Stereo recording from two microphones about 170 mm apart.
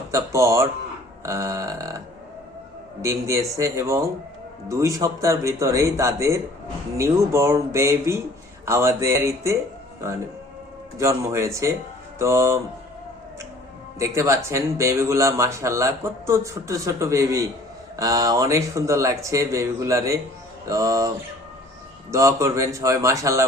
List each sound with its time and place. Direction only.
0.1 s speech: 15° right (ahead or behind)
3.0 s speech: 15° right (ahead or behind)
10.9 s speech: 15° right (ahead or behind)
14.0 s speech: 15° right (ahead or behind)
22.1 s speech: 15° right (ahead or behind)